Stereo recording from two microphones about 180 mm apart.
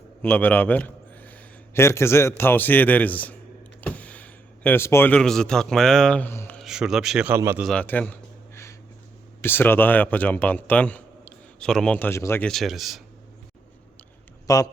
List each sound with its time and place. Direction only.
0.2 s a man's voice: 10° left (ahead or behind)
6.6 s a man's voice: 5° right (ahead or behind)
7.6 s a sound: 5° left (ahead or behind)
9.4 s speech: 10° left (ahead or behind)
12.5 s a man's voice: centre (ahead or behind)
14.4 s speech: 20° left (ahead or behind)